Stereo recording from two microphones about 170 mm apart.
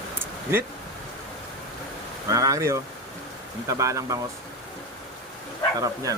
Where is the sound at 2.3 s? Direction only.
20° right (ahead or behind).